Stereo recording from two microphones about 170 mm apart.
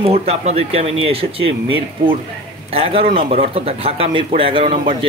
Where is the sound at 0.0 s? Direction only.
35° right (ahead or behind).